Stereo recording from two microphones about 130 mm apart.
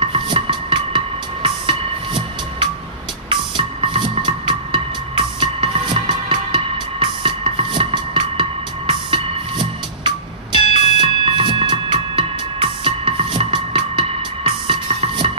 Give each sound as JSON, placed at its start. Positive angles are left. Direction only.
{"t": 0.0, "sound": "music", "side_deg": -40}